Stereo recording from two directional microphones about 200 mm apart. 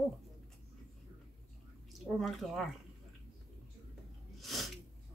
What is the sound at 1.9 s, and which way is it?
Speech, centre (ahead or behind).